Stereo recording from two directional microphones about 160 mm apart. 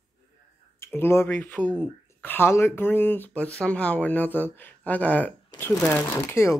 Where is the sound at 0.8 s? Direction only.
15° left (ahead or behind).